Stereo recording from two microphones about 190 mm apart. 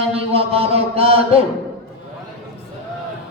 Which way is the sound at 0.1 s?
30° right (ahead or behind).